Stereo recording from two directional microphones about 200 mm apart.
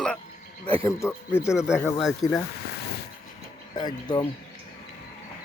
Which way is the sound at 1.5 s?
5° right (ahead or behind).